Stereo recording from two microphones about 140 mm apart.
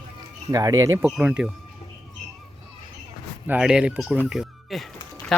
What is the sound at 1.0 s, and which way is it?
Speech, 5° right (ahead or behind).